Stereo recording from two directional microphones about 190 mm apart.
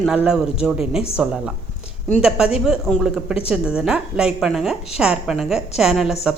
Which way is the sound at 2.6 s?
Centre (ahead or behind).